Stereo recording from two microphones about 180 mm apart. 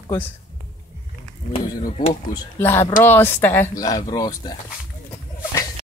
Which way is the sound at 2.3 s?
10° left (ahead or behind).